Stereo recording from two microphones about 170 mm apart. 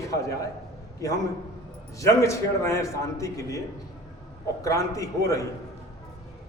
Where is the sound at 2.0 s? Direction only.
15° left (ahead or behind).